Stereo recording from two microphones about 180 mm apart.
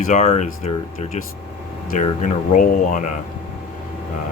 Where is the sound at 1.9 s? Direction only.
45° left (ahead or behind).